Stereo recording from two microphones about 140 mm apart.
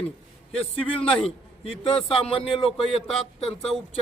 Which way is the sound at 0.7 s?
40° left (ahead or behind).